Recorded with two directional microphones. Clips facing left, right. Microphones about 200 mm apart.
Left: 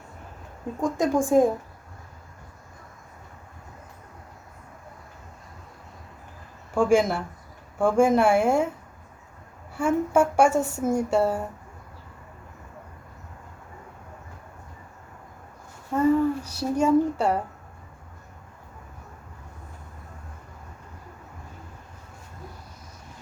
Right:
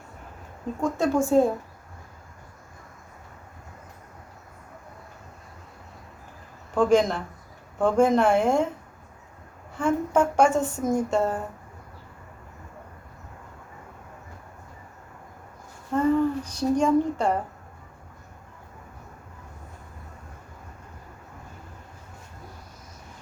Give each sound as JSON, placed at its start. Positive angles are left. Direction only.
{"t": 0.8, "sound": "a woman's voice", "side_deg": 15}
{"t": 6.7, "sound": "a woman's voice", "side_deg": 10}
{"t": 9.7, "sound": "a woman's voice", "side_deg": 10}
{"t": 15.9, "sound": "a woman's voice", "side_deg": 10}